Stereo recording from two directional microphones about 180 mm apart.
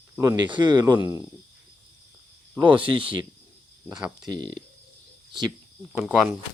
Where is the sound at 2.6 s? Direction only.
30° right (ahead or behind).